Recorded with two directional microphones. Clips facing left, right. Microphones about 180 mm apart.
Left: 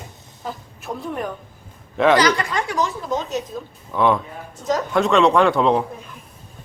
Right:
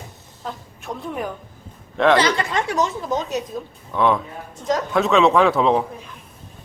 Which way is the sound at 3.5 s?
5° right (ahead or behind).